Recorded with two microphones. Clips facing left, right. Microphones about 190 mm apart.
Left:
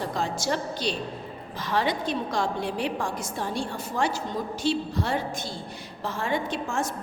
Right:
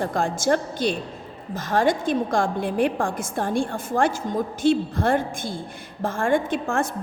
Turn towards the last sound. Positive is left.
turn(degrees=-55)  # may be behind; listen again after turning